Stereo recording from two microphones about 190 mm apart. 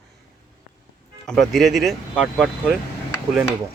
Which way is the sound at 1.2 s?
5° left (ahead or behind).